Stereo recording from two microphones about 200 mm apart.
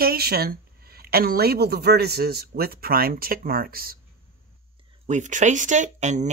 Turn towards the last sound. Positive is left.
turn(degrees=-35)  # may be behind; listen again after turning